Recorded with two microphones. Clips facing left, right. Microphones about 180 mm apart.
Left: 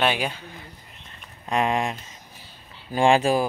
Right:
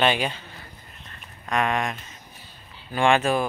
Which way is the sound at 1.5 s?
30° left (ahead or behind).